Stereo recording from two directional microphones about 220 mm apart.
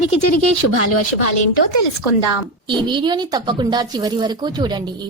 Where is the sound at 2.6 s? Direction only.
20° right (ahead or behind).